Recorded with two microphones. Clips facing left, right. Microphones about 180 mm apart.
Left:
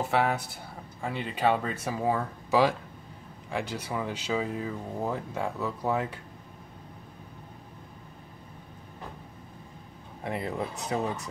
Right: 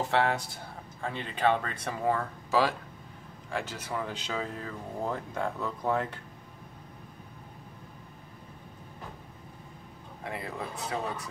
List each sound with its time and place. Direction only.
0.1 s speech: 5° left (ahead or behind)
10.2 s speech: 25° left (ahead or behind)